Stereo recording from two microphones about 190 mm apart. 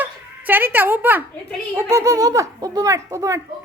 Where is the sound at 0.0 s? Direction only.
10° right (ahead or behind).